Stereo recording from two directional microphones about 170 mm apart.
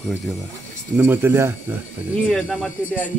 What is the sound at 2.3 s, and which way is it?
Speech, 5° left (ahead or behind).